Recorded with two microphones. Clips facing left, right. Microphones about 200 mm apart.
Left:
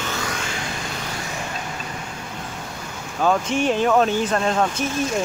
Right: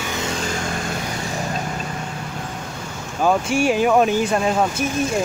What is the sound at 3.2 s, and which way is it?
Speech, 10° right (ahead or behind).